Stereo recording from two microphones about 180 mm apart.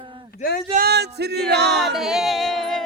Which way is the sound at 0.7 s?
65° right (ahead or behind).